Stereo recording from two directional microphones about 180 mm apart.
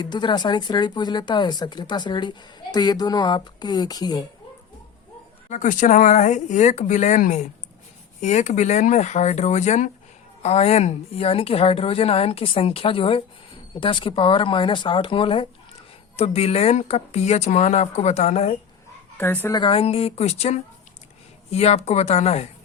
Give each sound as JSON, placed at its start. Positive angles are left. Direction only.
{"t": 0.0, "sound": "speech", "side_deg": 25}
{"t": 5.5, "sound": "a woman's voice", "side_deg": 45}
{"t": 19.1, "sound": "speech", "side_deg": 10}
{"t": 19.5, "sound": "a woman's voice", "side_deg": 30}